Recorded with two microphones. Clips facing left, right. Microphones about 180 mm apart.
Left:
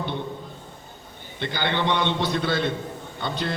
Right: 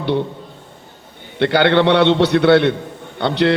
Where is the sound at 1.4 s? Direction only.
70° right (ahead or behind).